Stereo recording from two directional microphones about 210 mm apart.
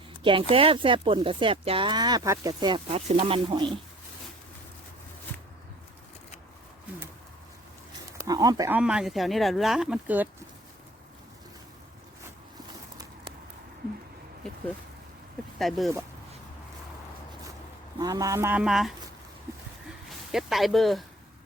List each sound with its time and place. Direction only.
0.2 s speech: 25° right (ahead or behind)
8.2 s speech: 15° right (ahead or behind)
8.8 s speech: 5° right (ahead or behind)
15.5 s speech: centre (ahead or behind)
18.0 s speech: 15° right (ahead or behind); by 18.9 s centre (ahead or behind)
20.1 s speech: centre (ahead or behind)